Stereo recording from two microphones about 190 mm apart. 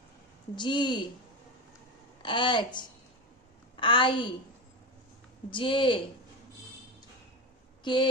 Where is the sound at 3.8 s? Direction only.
25° left (ahead or behind).